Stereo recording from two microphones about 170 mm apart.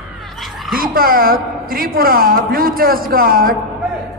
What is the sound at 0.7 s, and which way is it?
A woman's voice, 60° right (ahead or behind).